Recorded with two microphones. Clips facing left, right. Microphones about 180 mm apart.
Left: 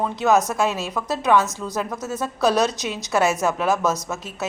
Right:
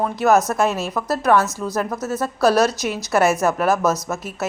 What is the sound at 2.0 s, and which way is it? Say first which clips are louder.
Speech: right 3 dB; 15° left (ahead or behind).